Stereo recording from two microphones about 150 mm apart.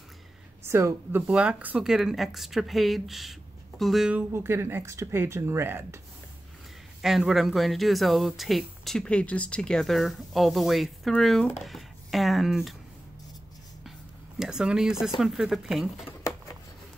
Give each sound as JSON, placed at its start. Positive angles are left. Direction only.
{"t": 0.7, "sound": "speech", "side_deg": -20}
{"t": 1.2, "sound": "speech", "side_deg": -5}
{"t": 4.3, "sound": "speech", "side_deg": -15}
{"t": 7.0, "sound": "speech", "side_deg": 0}
{"t": 14.4, "sound": "speech", "side_deg": -5}
{"t": 16.0, "sound": "a sound", "side_deg": 15}